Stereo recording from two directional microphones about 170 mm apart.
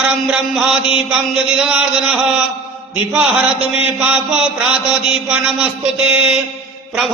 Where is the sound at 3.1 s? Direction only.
5° right (ahead or behind).